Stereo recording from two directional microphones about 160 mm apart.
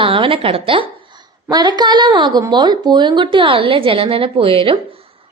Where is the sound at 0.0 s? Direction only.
35° right (ahead or behind).